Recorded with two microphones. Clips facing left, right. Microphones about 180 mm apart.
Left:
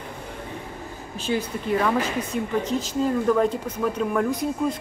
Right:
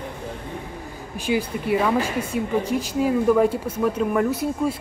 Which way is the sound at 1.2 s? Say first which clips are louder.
Right 3 dB; 10° right (ahead or behind).